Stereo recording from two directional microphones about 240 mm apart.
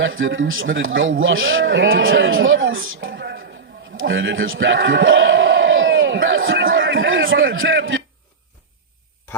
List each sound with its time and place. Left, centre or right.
0.0 s a man's voice: right